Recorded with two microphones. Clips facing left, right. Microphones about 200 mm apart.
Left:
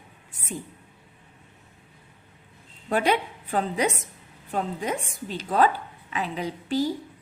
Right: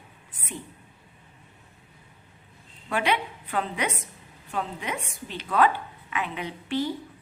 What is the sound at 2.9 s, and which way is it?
A woman's voice, 40° left (ahead or behind).